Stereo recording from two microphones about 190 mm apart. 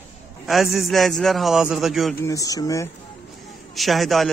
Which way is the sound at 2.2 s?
15° left (ahead or behind).